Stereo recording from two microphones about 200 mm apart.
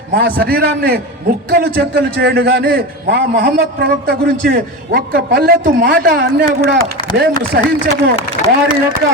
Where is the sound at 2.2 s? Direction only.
55° right (ahead or behind).